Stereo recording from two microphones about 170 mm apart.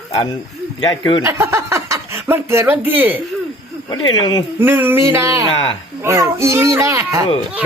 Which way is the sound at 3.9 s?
25° left (ahead or behind).